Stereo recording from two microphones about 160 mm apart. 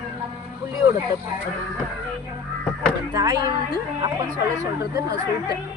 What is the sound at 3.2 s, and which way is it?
A woman's voice, 25° right (ahead or behind).